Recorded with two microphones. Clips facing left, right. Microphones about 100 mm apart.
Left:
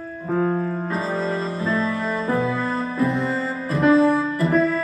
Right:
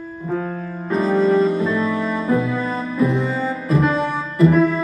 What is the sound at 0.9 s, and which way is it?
Music, centre (ahead or behind).